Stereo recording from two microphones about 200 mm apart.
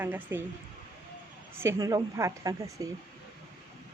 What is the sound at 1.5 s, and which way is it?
Speech, 15° right (ahead or behind).